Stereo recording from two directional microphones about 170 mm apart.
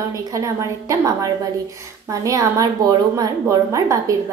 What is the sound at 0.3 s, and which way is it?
A woman's voice, 20° right (ahead or behind).